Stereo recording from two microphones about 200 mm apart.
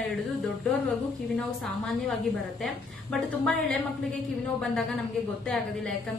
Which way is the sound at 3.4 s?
Centre (ahead or behind).